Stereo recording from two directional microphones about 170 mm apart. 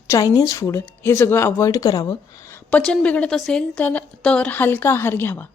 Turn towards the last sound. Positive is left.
turn(degrees=15)  # may be behind; listen again after turning